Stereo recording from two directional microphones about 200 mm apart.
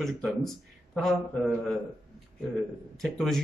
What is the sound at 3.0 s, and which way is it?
Speech, centre (ahead or behind).